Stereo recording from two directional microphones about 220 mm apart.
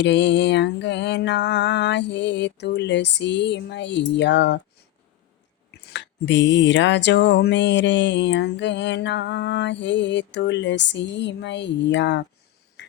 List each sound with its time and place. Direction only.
0.0 s mantra: 55° left (ahead or behind)
5.9 s mantra: 50° left (ahead or behind)